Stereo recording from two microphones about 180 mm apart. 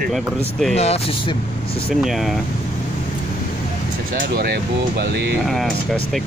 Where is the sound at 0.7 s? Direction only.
35° left (ahead or behind).